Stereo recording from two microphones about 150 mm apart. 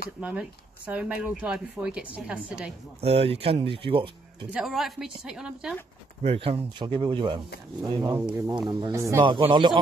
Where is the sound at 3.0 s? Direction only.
40° right (ahead or behind).